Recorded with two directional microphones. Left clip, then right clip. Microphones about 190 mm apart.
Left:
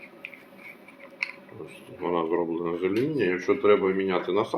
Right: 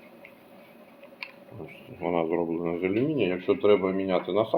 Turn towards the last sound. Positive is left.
turn(degrees=-35)  # may be behind; listen again after turning